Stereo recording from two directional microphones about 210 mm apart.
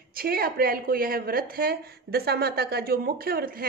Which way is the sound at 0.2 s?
45° right (ahead or behind).